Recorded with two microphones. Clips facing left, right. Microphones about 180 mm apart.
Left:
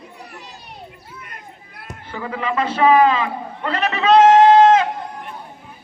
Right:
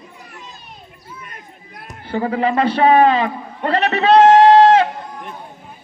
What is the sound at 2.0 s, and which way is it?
A man's voice, 35° right (ahead or behind).